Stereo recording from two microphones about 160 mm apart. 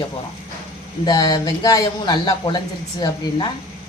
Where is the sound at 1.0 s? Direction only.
25° left (ahead or behind).